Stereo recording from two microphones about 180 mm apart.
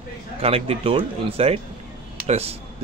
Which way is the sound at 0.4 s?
35° right (ahead or behind).